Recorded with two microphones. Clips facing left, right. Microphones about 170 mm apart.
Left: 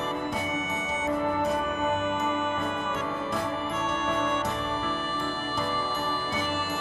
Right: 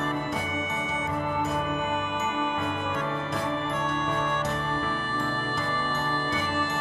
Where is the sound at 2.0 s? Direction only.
Centre (ahead or behind).